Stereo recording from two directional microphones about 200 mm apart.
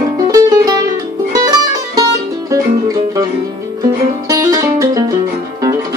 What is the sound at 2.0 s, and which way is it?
Music, 15° right (ahead or behind).